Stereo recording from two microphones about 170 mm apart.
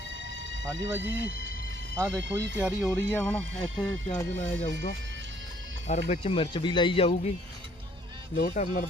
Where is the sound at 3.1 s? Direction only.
10° left (ahead or behind).